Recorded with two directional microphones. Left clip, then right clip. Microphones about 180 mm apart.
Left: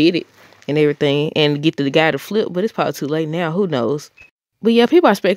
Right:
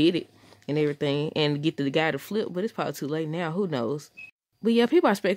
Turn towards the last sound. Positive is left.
turn(degrees=30)  # may be behind; listen again after turning